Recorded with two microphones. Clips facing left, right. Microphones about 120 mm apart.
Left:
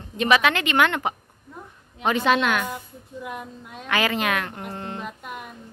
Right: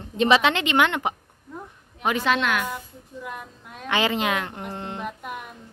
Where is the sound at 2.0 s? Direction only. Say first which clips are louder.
Left 2 dB; centre (ahead or behind).